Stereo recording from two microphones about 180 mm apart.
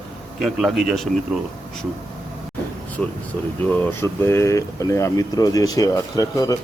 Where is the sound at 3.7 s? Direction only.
15° left (ahead or behind).